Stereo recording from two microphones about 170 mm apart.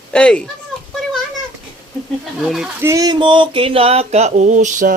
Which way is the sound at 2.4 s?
Centre (ahead or behind).